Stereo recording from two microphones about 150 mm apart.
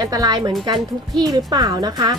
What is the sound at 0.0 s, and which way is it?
Speech, 25° right (ahead or behind).